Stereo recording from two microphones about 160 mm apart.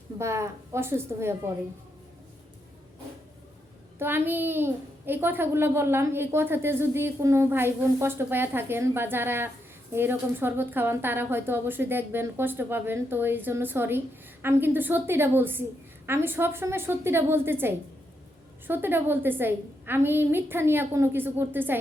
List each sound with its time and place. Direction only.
0.2 s a child's voice: 15° right (ahead or behind)
3.9 s a child's voice: 15° right (ahead or behind)